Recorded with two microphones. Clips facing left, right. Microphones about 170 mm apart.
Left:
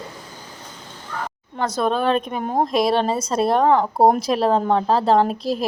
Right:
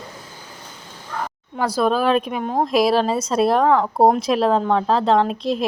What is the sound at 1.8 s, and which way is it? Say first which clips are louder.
A woman's voice: right 2 dB; 5° right (ahead or behind).